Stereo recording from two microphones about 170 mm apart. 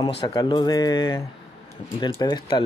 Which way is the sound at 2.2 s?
25° left (ahead or behind).